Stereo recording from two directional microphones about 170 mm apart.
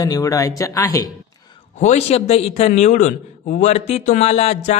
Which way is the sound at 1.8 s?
40° left (ahead or behind).